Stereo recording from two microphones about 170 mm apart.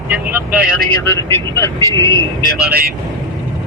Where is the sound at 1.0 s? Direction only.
15° left (ahead or behind).